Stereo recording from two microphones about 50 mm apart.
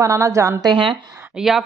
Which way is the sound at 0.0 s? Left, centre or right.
Right.